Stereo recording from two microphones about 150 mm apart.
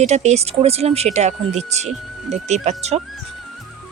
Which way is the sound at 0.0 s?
50° right (ahead or behind).